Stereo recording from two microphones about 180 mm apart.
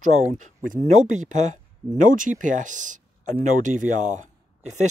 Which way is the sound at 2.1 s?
45° right (ahead or behind).